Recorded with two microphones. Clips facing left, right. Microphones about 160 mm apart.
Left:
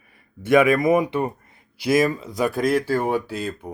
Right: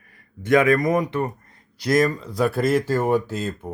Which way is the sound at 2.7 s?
10° left (ahead or behind).